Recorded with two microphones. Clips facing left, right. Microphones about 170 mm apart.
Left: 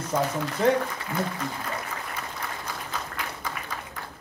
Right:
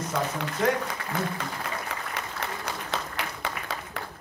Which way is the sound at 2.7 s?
75° right (ahead or behind).